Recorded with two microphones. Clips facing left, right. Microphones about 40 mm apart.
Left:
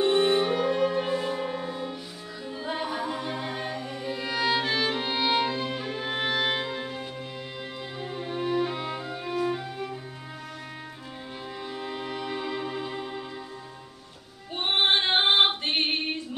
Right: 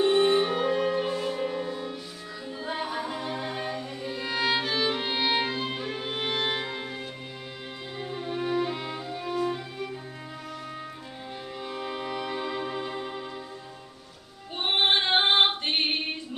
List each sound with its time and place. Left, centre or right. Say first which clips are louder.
0.0 s music: right 1 dB; centre
0.9 s music: left 1 dB; centre
4.6 s violin: left 1 dB; centre
5.8 s music: left 1 dB; centre
6.0 s violin: left 4 dB; centre
6.3 s music: left 2 dB; centre
11.8 s music: right 2 dB; centre
14.6 s female singing: even; centre